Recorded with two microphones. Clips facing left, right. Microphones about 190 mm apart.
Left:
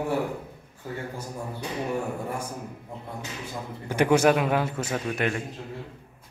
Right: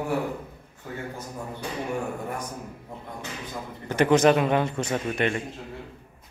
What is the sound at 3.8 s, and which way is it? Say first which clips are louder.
Speech: right 1 dB; 10° left (ahead or behind).